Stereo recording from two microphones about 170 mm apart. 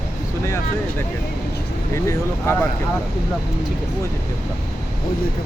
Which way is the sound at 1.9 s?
15° left (ahead or behind).